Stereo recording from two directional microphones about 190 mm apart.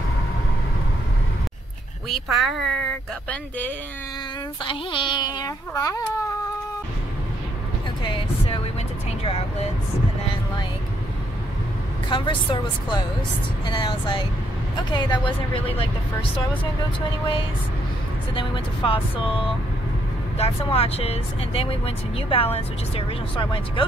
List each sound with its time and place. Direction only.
2.0 s speech: centre (ahead or behind)
4.6 s speech: 25° left (ahead or behind)
8.0 s music: 25° left (ahead or behind)
9.2 s vehicle: 30° left (ahead or behind)
12.1 s speech: 25° left (ahead or behind)
18.3 s speech: 25° left (ahead or behind)
20.3 s speech: 30° left (ahead or behind)